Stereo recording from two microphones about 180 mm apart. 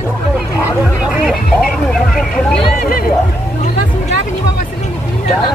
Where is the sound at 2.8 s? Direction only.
55° left (ahead or behind).